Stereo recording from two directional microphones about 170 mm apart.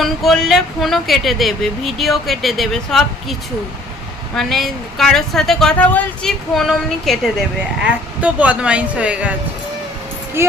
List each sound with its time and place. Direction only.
0.0 s speech: centre (ahead or behind)
4.4 s speech: centre (ahead or behind)
10.4 s speech: 15° right (ahead or behind)